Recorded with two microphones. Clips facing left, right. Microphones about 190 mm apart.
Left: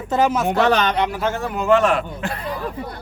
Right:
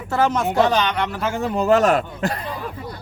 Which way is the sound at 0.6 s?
65° left (ahead or behind).